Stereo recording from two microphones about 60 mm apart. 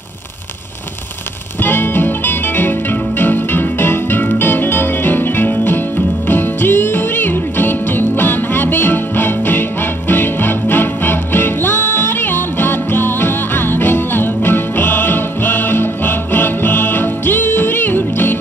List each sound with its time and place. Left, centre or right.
1.6 s music: left